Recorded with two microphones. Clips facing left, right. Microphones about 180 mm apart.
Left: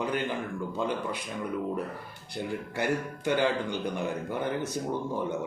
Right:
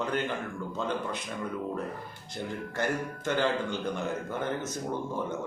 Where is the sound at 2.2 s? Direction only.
15° left (ahead or behind).